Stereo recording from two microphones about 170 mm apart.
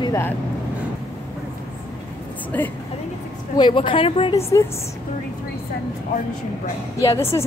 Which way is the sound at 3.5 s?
30° left (ahead or behind).